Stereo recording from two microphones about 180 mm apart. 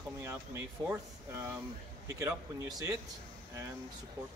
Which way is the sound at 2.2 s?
15° right (ahead or behind).